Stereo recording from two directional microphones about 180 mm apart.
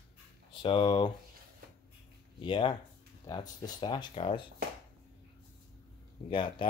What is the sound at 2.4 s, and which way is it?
Speech, 30° left (ahead or behind).